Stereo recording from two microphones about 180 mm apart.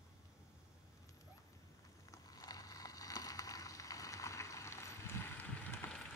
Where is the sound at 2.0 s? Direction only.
20° left (ahead or behind).